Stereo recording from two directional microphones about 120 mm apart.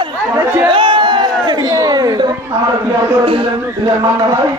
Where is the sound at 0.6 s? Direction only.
45° right (ahead or behind).